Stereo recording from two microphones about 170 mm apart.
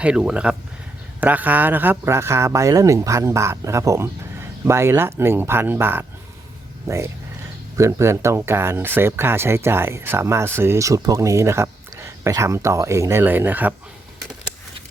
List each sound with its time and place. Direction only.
0.0 s speech: 5° right (ahead or behind)